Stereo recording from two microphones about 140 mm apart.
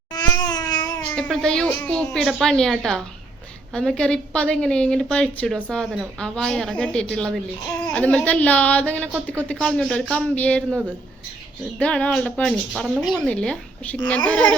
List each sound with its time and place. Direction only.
0.1 s babbling: 30° left (ahead or behind)
0.9 s a woman's voice: 5° left (ahead or behind)
9.1 s speech: 15° right (ahead or behind)
9.5 s speech: 5° left (ahead or behind)
11.8 s speech: 10° left (ahead or behind)